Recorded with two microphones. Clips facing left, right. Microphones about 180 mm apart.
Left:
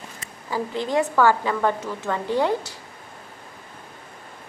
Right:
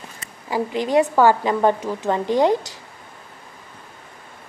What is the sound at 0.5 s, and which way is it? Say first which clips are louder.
A woman's voice: right 4 dB; 15° right (ahead or behind).